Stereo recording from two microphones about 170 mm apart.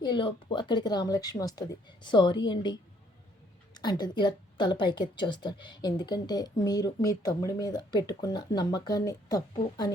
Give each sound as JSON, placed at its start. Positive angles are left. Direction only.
{"t": 0.0, "sound": "a woman's voice", "side_deg": 30}
{"t": 3.8, "sound": "a woman's voice", "side_deg": 25}